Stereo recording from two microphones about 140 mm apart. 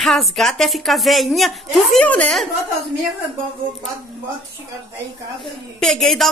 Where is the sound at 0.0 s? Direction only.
Centre (ahead or behind).